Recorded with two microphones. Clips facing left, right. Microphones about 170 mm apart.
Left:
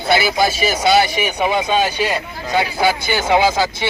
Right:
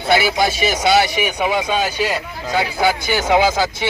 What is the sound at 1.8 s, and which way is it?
Speech, 15° left (ahead or behind).